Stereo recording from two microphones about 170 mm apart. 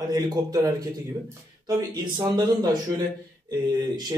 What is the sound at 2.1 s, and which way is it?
Speech, 25° right (ahead or behind).